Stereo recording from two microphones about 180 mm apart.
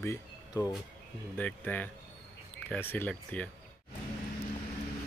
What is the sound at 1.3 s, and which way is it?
Speech, 10° left (ahead or behind).